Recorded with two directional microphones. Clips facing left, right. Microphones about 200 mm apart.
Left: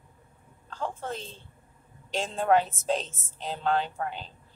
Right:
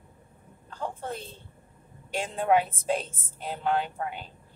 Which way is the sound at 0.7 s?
15° right (ahead or behind).